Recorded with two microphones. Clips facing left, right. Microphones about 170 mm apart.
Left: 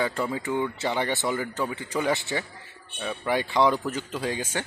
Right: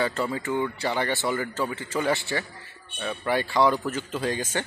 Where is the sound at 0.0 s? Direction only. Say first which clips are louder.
Right 1 dB; 15° left (ahead or behind).